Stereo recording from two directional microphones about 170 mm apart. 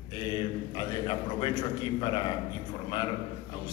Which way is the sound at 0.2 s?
30° left (ahead or behind).